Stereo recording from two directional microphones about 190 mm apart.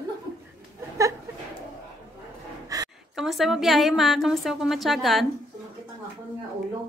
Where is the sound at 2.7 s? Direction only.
20° right (ahead or behind).